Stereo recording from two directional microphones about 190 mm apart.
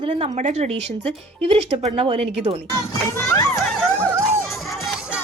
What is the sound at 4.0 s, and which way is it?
Music, 15° right (ahead or behind).